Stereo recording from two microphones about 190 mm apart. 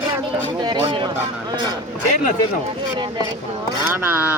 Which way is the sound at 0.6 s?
25° right (ahead or behind).